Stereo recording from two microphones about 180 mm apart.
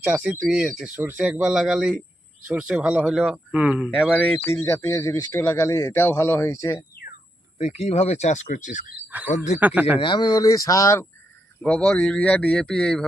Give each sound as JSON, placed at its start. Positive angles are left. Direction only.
{"t": 0.0, "sound": "speech", "side_deg": -10}
{"t": 4.4, "sound": "speech", "side_deg": 10}
{"t": 7.6, "sound": "speech", "side_deg": 35}
{"t": 9.0, "sound": "speech", "side_deg": -10}
{"t": 10.0, "sound": "speech", "side_deg": 25}